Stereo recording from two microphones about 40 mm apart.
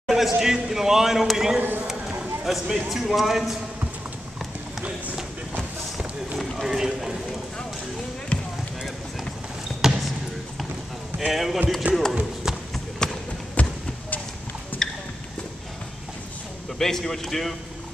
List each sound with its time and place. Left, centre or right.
0.1 s a man's voice: centre
6.6 s a man's voice: centre
8.3 s basketball bounce: left
9.8 s basketball bounce: centre
11.1 s a man's voice: centre
11.9 s speech: right
12.4 s run: centre
13.0 s a sound: centre
13.6 s basketball bounce: left
14.8 s a sound: centre
16.7 s speech: centre